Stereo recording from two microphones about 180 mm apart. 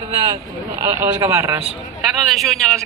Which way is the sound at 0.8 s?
15° right (ahead or behind).